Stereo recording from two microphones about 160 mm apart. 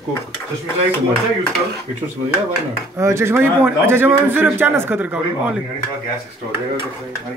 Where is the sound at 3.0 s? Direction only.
15° right (ahead or behind).